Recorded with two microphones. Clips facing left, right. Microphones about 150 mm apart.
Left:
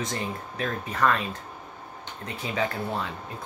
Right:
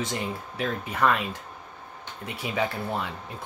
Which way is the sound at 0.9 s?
5° right (ahead or behind).